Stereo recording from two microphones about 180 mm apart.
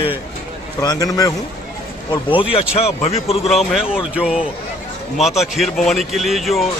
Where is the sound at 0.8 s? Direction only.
20° left (ahead or behind).